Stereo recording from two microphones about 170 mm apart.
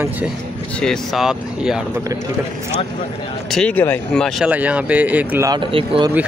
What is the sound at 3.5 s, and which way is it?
Speech, 10° left (ahead or behind).